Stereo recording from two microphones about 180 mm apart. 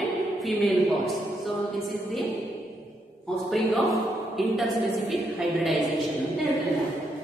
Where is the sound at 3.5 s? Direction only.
Centre (ahead or behind).